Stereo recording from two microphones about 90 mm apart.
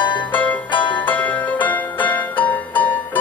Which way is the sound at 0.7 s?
65° left (ahead or behind).